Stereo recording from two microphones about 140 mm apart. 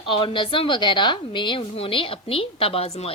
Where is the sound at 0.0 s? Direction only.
35° left (ahead or behind).